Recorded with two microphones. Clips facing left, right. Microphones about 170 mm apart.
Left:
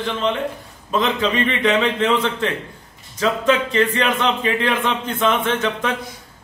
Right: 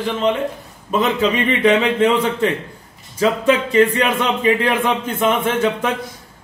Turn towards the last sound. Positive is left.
turn(degrees=-10)  # may be behind; listen again after turning